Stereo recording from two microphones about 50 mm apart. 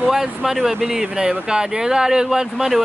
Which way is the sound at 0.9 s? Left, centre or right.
Centre.